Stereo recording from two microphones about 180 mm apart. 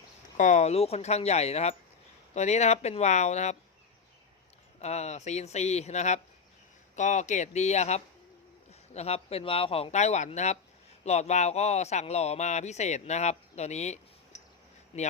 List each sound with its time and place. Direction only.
0.3 s speech: 45° left (ahead or behind)
4.8 s speech: 40° left (ahead or behind)